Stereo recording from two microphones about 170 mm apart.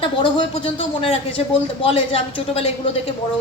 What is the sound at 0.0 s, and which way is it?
A woman's voice, 30° left (ahead or behind).